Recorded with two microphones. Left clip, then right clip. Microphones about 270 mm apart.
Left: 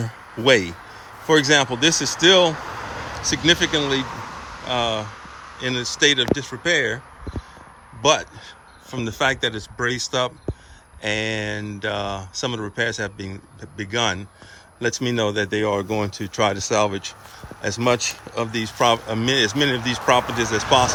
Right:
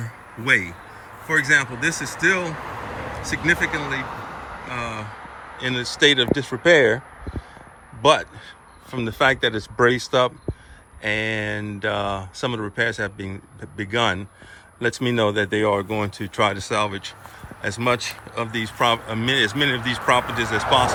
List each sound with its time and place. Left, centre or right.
0.4 s a man's voice: centre
2.2 s vehicle: centre
3.3 s speech: left
4.0 s a sound: right
4.7 s speech: centre
8.0 s a man's voice: centre